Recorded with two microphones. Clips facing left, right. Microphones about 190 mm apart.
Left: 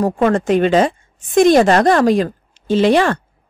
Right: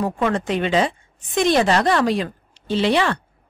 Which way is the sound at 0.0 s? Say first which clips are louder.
Left 6 dB; 45° left (ahead or behind).